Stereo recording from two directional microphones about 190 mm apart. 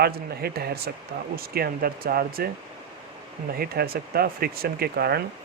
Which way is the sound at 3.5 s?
50° right (ahead or behind).